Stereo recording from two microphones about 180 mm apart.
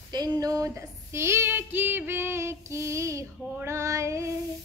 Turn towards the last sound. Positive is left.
turn(degrees=-15)  # may be behind; listen again after turning